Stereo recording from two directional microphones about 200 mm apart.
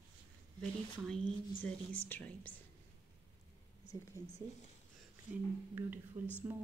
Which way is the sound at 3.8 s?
35° left (ahead or behind).